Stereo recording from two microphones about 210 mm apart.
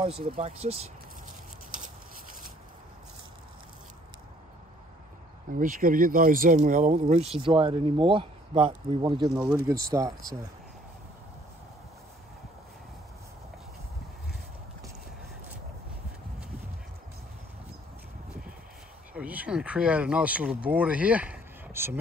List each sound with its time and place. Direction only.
0.4 s speech: 30° right (ahead or behind)
5.5 s speech: 40° right (ahead or behind); by 10.1 s 15° right (ahead or behind)
19.1 s speech: 5° right (ahead or behind)